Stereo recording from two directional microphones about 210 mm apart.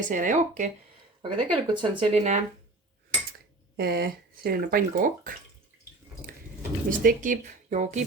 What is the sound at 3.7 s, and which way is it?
Speech, 45° right (ahead or behind).